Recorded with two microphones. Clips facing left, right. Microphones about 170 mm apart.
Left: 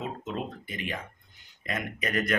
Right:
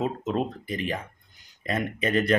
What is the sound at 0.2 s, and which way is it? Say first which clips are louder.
Speech: right 7 dB; 35° right (ahead or behind).